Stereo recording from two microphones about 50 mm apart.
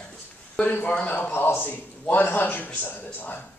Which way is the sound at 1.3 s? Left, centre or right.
Left.